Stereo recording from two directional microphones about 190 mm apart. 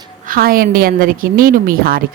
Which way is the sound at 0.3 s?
50° right (ahead or behind).